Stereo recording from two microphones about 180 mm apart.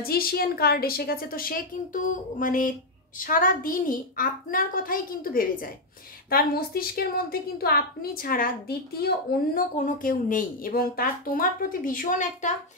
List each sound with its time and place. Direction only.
0.0 s a woman's voice: 55° left (ahead or behind)